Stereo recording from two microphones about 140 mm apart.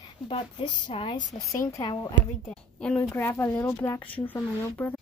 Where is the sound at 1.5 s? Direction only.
20° left (ahead or behind).